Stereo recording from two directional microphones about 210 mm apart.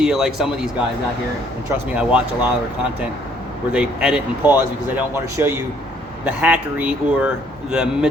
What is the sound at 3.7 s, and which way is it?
A man's voice, 5° right (ahead or behind).